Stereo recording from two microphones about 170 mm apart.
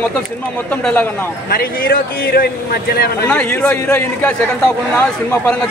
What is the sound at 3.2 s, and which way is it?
Speech, 10° left (ahead or behind).